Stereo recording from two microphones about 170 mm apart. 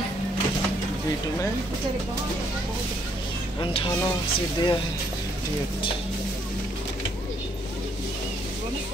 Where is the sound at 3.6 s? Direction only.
30° left (ahead or behind).